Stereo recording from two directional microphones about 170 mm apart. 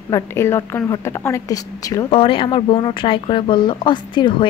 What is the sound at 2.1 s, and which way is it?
A woman's voice, 30° left (ahead or behind).